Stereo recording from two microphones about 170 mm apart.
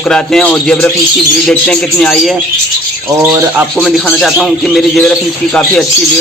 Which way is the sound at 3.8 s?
Centre (ahead or behind).